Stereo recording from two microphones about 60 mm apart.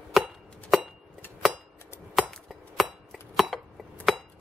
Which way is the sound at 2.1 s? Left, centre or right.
Centre.